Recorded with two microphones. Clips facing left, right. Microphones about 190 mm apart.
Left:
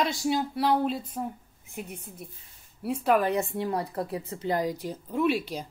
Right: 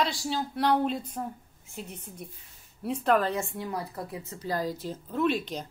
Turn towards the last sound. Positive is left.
turn(degrees=10)  # may be behind; listen again after turning